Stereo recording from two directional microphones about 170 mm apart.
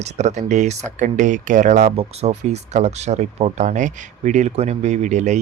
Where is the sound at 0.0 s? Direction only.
45° right (ahead or behind).